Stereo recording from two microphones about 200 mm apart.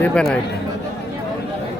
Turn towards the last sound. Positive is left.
turn(degrees=5)  # may be behind; listen again after turning